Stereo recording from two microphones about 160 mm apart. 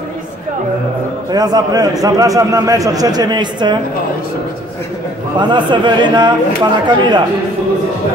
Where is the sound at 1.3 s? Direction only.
25° right (ahead or behind).